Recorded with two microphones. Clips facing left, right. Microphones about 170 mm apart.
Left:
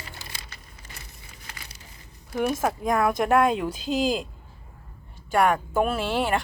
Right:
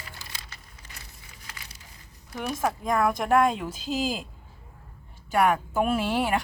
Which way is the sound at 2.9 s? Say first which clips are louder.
Left 1 dB; centre (ahead or behind).